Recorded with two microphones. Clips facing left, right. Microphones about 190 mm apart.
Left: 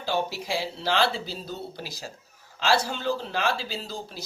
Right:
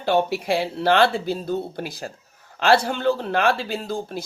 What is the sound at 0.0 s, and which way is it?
Speech, 60° right (ahead or behind).